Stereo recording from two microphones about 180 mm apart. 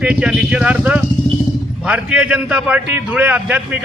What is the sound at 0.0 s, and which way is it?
A man's voice, 5° right (ahead or behind).